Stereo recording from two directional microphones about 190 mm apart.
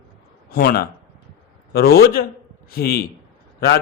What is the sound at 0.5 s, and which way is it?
A man's voice, 50° left (ahead or behind).